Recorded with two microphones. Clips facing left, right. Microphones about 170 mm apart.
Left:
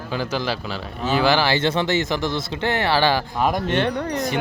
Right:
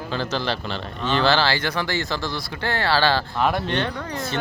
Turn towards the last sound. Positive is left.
turn(degrees=20)  # may be behind; listen again after turning